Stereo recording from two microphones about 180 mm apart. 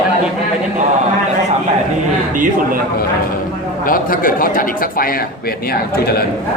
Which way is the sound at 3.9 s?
50° left (ahead or behind).